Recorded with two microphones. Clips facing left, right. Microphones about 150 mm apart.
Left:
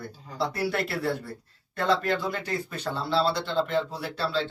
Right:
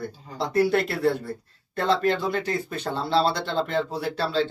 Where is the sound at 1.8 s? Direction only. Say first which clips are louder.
Right 3 dB; 25° right (ahead or behind).